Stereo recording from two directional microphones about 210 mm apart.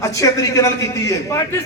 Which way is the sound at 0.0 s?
15° left (ahead or behind).